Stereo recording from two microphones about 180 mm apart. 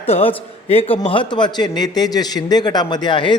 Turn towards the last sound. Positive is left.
turn(degrees=25)  # may be behind; listen again after turning